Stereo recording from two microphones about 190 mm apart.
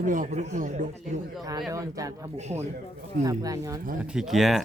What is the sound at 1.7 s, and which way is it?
Speech, 15° right (ahead or behind).